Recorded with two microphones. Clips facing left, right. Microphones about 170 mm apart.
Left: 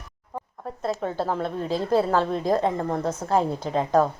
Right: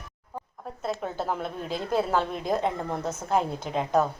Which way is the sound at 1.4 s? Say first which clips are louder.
Left 5 dB; 30° left (ahead or behind).